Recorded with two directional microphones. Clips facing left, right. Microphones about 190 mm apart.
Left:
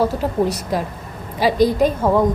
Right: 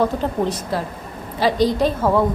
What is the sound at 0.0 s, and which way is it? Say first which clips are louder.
A woman's voice: left 1 dB; 10° left (ahead or behind).